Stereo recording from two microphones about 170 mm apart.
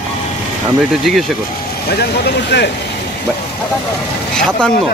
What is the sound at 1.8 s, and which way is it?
Speech, 70° left (ahead or behind).